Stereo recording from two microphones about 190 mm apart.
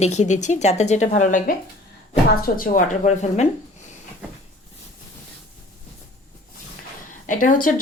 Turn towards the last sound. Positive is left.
turn(degrees=45)  # may be behind; listen again after turning